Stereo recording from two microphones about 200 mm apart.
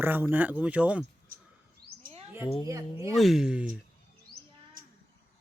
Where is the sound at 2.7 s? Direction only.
15° right (ahead or behind).